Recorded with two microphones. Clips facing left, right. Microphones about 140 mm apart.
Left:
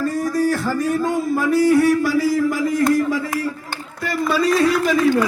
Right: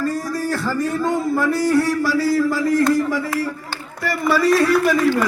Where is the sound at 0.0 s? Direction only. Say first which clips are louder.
Left 3 dB; 20° left (ahead or behind).